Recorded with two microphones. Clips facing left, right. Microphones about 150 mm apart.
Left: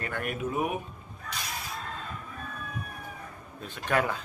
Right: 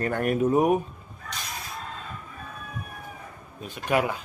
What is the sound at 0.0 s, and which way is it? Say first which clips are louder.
Speech: right 9 dB; 40° right (ahead or behind).